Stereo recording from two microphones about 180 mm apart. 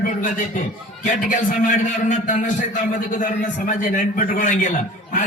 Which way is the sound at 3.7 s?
45° left (ahead or behind).